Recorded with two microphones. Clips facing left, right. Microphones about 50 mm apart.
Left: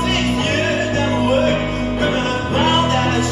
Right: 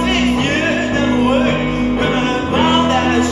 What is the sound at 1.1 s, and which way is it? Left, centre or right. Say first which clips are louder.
Music: right 1 dB; right.